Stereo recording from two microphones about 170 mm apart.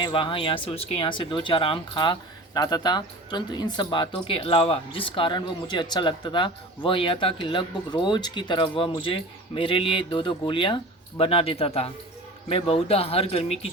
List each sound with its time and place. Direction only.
0.0 s speech: 30° left (ahead or behind)